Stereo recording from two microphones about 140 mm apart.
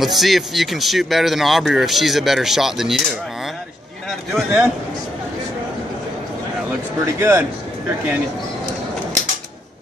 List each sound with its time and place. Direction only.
0.0 s speech: centre (ahead or behind)
4.4 s a man's voice: 5° right (ahead or behind)
7.2 s a man's voice: 15° right (ahead or behind)